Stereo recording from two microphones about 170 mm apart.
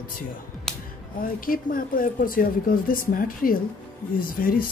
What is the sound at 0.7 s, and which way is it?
Music, centre (ahead or behind).